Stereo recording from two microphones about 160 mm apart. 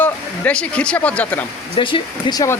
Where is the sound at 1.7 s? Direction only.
30° left (ahead or behind).